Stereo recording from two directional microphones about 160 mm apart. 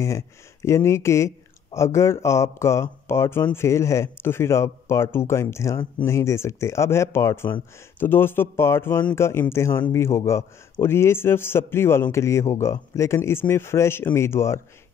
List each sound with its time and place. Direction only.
0.0 s speech: 20° left (ahead or behind)